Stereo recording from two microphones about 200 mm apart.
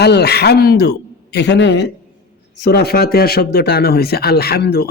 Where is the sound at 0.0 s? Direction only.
55° left (ahead or behind).